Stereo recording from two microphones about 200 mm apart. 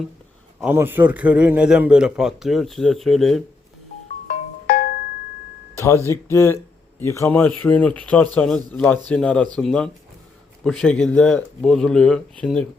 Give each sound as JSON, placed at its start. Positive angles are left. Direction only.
{"t": 0.6, "sound": "a man's voice", "side_deg": -10}
{"t": 4.3, "sound": "music", "side_deg": 45}
{"t": 6.3, "sound": "a man's voice", "side_deg": 15}